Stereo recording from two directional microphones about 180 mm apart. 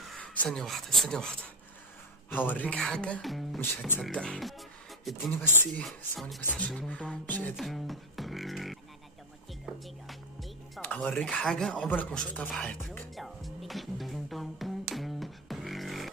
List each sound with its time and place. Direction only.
0.1 s speech: 5° left (ahead or behind)
3.6 s speech: 10° left (ahead or behind)
7.5 s beatboxing: centre (ahead or behind)
9.5 s music: centre (ahead or behind)
10.8 s a sound: 10° left (ahead or behind)